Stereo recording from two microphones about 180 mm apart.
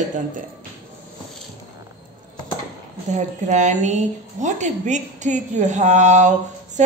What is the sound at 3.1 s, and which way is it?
A woman's voice, 40° right (ahead or behind).